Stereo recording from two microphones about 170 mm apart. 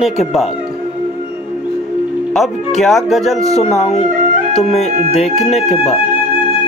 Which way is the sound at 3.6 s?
40° left (ahead or behind).